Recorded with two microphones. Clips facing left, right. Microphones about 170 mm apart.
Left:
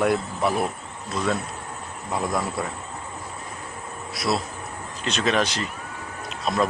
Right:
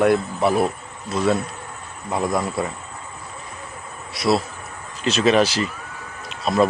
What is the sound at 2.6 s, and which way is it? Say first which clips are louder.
Speech: right 4 dB; centre (ahead or behind).